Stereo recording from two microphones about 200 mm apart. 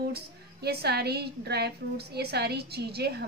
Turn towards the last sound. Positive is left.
turn(degrees=-55)  # may be behind; listen again after turning